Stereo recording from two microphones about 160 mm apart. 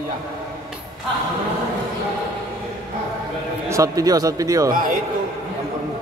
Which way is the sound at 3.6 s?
20° right (ahead or behind).